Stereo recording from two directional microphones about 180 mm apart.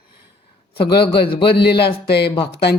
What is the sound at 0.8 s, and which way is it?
A woman's voice, 65° left (ahead or behind).